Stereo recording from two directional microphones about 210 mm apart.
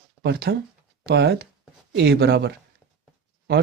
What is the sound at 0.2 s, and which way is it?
Speech, 50° right (ahead or behind).